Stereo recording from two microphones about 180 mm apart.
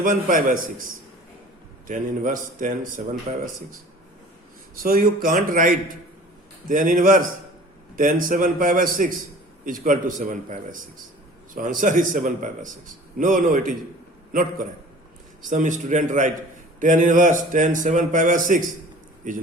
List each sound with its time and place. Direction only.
0.0 s a man's voice: 50° right (ahead or behind)
1.9 s a man's voice: 50° right (ahead or behind)
4.8 s a man's voice: 55° right (ahead or behind)